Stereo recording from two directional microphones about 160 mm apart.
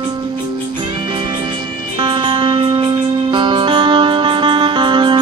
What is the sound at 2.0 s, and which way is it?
Music, 30° right (ahead or behind).